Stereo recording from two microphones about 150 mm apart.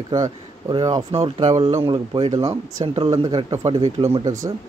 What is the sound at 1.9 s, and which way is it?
Speech, 30° right (ahead or behind).